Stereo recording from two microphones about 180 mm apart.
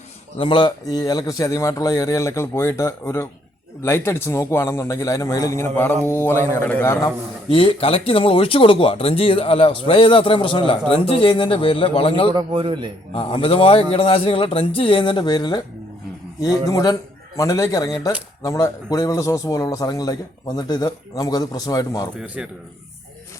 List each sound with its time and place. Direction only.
0.3 s a man's voice: 30° left (ahead or behind)
7.5 s speech: 30° left (ahead or behind)
12.3 s speech: 25° right (ahead or behind)
13.1 s speech: 30° left (ahead or behind)
22.4 s speech: 5° right (ahead or behind)